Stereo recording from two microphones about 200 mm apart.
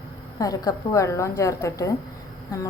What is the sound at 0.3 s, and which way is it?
A woman's voice, 15° left (ahead or behind).